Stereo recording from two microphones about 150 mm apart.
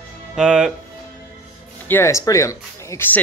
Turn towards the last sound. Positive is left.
turn(degrees=20)  # may be behind; listen again after turning